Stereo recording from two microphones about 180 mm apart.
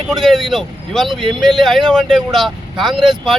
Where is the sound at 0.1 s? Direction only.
Centre (ahead or behind).